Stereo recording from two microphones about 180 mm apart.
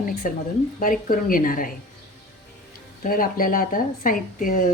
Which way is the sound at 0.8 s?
50° left (ahead or behind).